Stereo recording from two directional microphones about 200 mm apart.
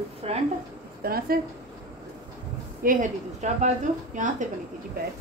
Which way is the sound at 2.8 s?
40° right (ahead or behind).